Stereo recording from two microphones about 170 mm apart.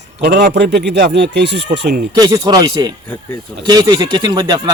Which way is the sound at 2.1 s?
20° right (ahead or behind).